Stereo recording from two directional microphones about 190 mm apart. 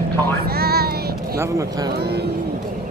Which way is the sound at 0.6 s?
55° right (ahead or behind).